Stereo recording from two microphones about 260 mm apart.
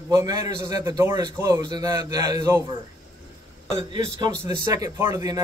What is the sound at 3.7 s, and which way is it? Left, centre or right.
A man's voice, centre.